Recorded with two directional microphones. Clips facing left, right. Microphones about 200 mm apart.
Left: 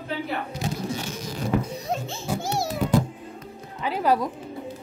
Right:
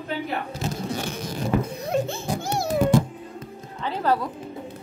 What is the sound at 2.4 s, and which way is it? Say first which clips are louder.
Music: right 3 dB; 55° right (ahead or behind).